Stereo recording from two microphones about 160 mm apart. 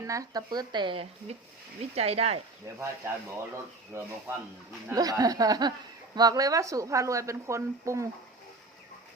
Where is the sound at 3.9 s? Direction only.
15° right (ahead or behind).